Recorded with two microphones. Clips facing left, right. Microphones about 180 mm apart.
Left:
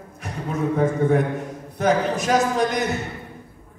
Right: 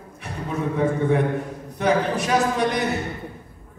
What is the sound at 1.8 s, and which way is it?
Speech, 45° left (ahead or behind).